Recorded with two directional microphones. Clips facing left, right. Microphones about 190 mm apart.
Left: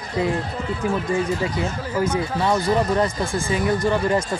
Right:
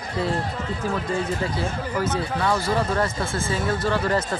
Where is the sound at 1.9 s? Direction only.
15° left (ahead or behind).